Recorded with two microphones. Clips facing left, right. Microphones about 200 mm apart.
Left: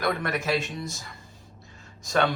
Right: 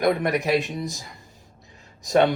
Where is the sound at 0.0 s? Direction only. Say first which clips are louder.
Right 6 dB; 20° right (ahead or behind).